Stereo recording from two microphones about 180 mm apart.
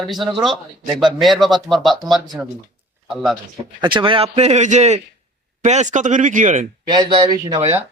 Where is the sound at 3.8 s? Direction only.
30° right (ahead or behind); by 6.6 s 45° right (ahead or behind).